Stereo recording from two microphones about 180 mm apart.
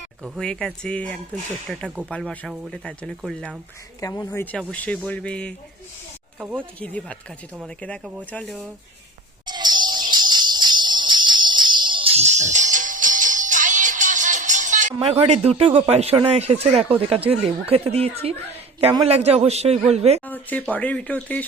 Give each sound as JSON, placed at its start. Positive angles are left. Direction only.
{"t": 0.2, "sound": "speech", "side_deg": 5}
{"t": 4.0, "sound": "speech", "side_deg": 20}
{"t": 6.6, "sound": "speech", "side_deg": 5}
{"t": 9.5, "sound": "jingle bell", "side_deg": -25}
{"t": 14.9, "sound": "a man's voice", "side_deg": -30}
{"t": 20.2, "sound": "speech", "side_deg": 10}